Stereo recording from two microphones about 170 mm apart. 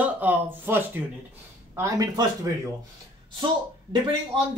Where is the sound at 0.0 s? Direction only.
10° right (ahead or behind).